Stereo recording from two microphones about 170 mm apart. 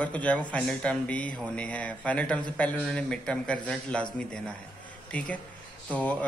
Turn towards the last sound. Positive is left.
turn(degrees=10)  # may be behind; listen again after turning